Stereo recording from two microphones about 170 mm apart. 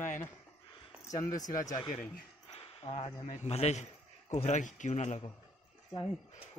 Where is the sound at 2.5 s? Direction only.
35° left (ahead or behind).